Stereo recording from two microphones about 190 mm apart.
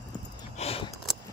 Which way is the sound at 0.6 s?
30° left (ahead or behind).